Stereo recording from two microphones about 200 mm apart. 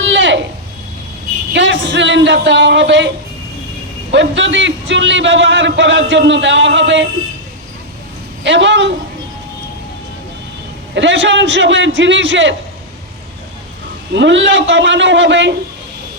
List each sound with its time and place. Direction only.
0.0 s a sound: 65° right (ahead or behind)
1.5 s speech: 65° right (ahead or behind)
4.1 s a man's voice: 65° right (ahead or behind)
8.4 s a man's voice: 65° right (ahead or behind)
10.9 s a man's voice: 65° right (ahead or behind)
14.1 s a man's voice: 65° right (ahead or behind)